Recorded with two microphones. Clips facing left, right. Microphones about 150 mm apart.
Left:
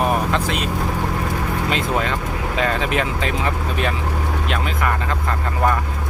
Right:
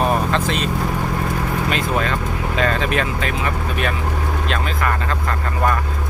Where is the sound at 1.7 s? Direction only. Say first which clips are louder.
Even; 20° left (ahead or behind).